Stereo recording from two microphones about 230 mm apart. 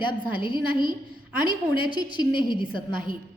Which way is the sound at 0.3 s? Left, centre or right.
Right.